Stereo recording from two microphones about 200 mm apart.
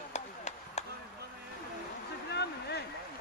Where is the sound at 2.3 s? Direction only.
55° left (ahead or behind).